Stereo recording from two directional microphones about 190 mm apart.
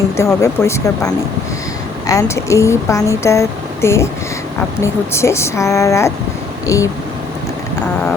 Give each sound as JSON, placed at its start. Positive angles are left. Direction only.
{"t": 0.2, "sound": "speech", "side_deg": 15}